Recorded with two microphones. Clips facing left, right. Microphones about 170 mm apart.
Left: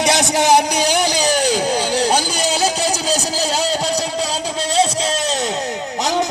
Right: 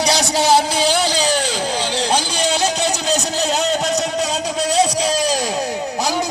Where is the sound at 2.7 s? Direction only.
35° left (ahead or behind).